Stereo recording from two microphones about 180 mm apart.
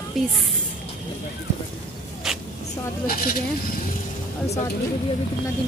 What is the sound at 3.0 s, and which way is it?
Speech, 55° left (ahead or behind).